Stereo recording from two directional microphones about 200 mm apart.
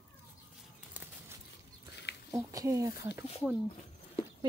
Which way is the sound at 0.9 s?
10° right (ahead or behind).